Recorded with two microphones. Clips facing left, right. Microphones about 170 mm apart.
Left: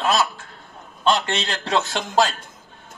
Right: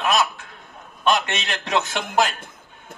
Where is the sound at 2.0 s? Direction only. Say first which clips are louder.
Left 1 dB; 60° right (ahead or behind).